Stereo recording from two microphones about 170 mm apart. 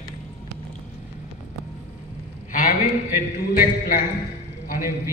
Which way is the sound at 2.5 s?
50° left (ahead or behind).